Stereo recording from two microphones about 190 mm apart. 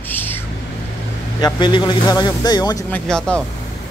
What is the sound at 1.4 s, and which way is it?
Speech, 25° left (ahead or behind).